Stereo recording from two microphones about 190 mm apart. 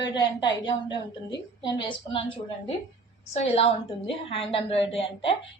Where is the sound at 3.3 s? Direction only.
35° left (ahead or behind).